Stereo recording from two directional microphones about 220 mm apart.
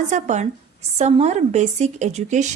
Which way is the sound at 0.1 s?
30° right (ahead or behind).